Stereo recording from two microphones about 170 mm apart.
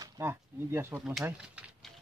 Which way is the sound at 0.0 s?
15° right (ahead or behind).